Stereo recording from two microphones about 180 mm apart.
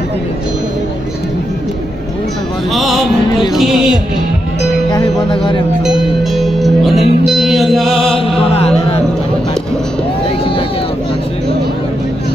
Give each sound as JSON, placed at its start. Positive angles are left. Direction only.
{"t": 2.7, "sound": "music", "side_deg": 0}
{"t": 4.9, "sound": "music", "side_deg": 25}
{"t": 5.9, "sound": "music", "side_deg": 0}
{"t": 8.4, "sound": "music", "side_deg": 35}